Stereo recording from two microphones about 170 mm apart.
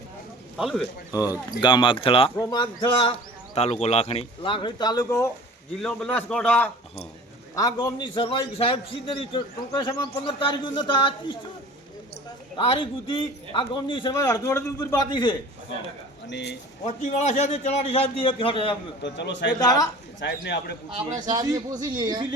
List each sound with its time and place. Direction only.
0.5 s a man's voice: centre (ahead or behind)
1.1 s a man's voice: 20° left (ahead or behind)
5.8 s a man's voice: 5° left (ahead or behind)
7.5 s a man's voice: 20° left (ahead or behind)
12.5 s a man's voice: 30° left (ahead or behind)
16.2 s speech: 85° left
16.8 s a man's voice: 45° left (ahead or behind)
19.0 s a man's voice: 90° left
19.5 s a man's voice: 20° left (ahead or behind)
20.1 s a man's voice: 90° left
21.2 s a man's voice: 25° right (ahead or behind)